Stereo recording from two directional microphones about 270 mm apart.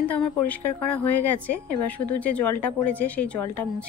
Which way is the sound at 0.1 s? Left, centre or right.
Centre.